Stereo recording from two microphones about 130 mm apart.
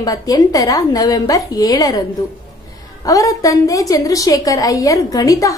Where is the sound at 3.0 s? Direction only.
25° left (ahead or behind).